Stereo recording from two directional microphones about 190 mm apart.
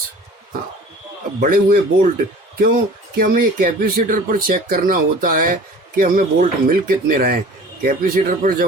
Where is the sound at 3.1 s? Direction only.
45° right (ahead or behind).